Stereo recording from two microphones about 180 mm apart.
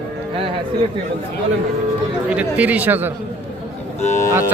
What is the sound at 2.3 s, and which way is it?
Speech, 10° right (ahead or behind).